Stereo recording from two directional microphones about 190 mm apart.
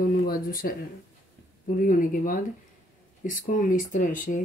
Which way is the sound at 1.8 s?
45° left (ahead or behind).